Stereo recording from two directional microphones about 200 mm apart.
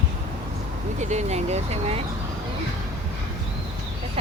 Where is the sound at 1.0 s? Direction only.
35° right (ahead or behind).